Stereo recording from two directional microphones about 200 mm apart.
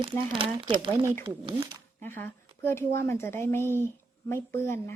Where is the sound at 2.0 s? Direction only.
10° left (ahead or behind).